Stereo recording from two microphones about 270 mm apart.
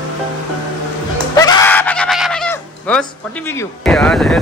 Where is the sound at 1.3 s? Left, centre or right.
Centre.